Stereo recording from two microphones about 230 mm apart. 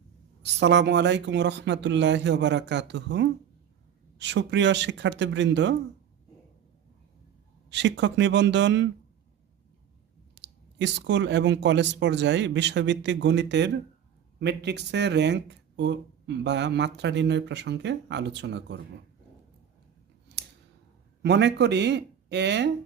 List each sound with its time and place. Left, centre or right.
0.6 s speech: right
7.7 s speech: right
10.3 s speech: right
21.2 s speech: right